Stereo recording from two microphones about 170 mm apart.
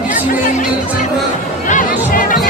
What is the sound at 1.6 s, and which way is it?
Music, 50° left (ahead or behind).